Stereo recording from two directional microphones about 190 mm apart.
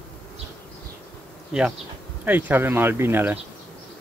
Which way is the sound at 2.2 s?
10° right (ahead or behind).